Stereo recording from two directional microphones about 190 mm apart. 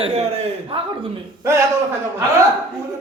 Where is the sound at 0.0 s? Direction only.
30° right (ahead or behind).